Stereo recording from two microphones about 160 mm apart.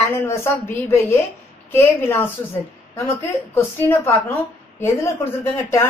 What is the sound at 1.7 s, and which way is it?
Speech, 15° left (ahead or behind).